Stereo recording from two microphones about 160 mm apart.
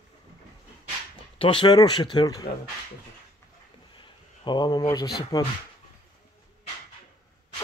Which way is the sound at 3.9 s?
30° left (ahead or behind).